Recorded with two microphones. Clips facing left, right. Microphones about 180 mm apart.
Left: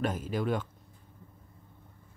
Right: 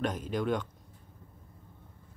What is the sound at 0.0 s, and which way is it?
Speech, 5° left (ahead or behind).